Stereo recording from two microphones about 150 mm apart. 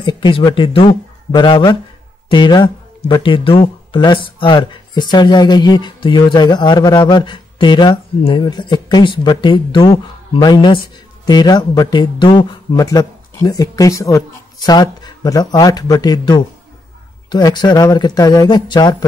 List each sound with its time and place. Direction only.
0.0 s speech: 30° left (ahead or behind)